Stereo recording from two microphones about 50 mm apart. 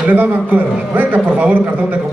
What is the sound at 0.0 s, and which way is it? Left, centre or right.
A man's voice, right.